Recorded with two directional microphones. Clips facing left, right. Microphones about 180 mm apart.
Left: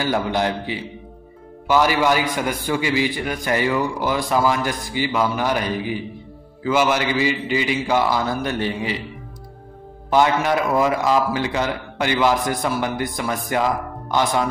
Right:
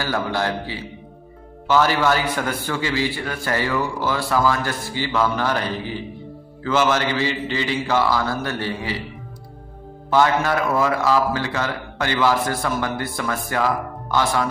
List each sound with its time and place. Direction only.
0.0 s a man's voice: 20° left (ahead or behind)
10.0 s a man's voice: 15° left (ahead or behind)